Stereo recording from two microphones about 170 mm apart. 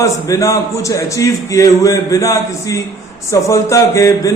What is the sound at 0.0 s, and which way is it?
Speech, 20° left (ahead or behind).